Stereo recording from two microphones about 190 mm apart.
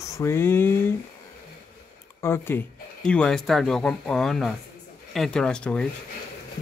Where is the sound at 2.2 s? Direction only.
10° left (ahead or behind).